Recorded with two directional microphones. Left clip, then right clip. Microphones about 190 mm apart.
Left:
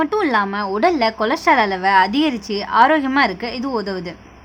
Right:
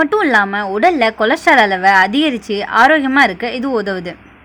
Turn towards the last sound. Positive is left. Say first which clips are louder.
# right 5 dB
turn(degrees=-10)  # may be behind; listen again after turning